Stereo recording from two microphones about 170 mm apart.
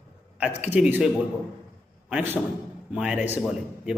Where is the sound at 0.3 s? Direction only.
10° right (ahead or behind).